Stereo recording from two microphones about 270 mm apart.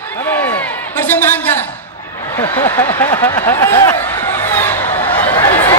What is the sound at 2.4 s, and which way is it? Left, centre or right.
Speech, centre.